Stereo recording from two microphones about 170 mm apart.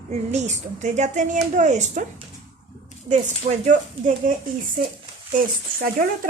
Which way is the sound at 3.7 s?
50° right (ahead or behind).